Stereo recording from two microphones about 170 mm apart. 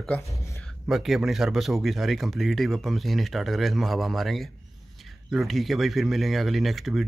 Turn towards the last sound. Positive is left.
turn(degrees=0)  # may be behind; listen again after turning